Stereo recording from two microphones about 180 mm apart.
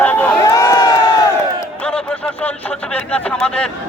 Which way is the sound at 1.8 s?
5° left (ahead or behind).